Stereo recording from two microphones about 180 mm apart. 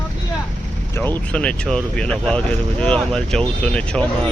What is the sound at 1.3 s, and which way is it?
Speech, 5° left (ahead or behind).